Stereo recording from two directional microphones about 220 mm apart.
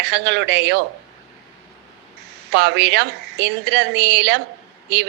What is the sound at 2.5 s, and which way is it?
Speech, 50° right (ahead or behind).